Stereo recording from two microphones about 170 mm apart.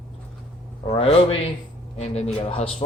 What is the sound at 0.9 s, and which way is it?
Speech, 35° left (ahead or behind).